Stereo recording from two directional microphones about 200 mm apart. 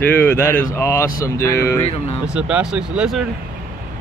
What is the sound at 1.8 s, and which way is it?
Speech, 30° left (ahead or behind).